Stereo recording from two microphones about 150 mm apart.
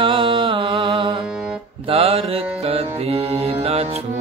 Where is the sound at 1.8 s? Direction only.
40° right (ahead or behind).